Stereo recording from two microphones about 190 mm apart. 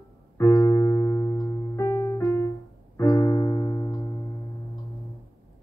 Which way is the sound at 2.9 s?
15° left (ahead or behind).